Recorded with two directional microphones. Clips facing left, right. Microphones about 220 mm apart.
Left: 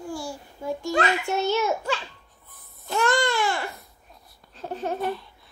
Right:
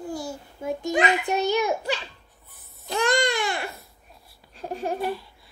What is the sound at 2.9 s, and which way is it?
Baby cry, 15° right (ahead or behind).